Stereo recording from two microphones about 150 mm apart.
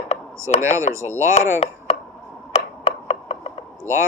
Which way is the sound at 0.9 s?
20° right (ahead or behind).